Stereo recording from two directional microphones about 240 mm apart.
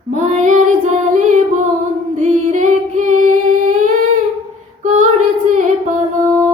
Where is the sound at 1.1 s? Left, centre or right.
Right.